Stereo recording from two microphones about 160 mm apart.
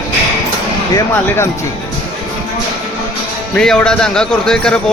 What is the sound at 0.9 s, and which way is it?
Speech, 15° left (ahead or behind).